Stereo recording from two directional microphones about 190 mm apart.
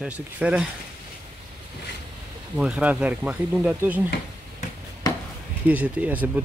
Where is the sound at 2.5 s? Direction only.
5° right (ahead or behind).